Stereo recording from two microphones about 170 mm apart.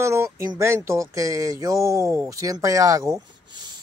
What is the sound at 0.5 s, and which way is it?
Speech, 15° right (ahead or behind).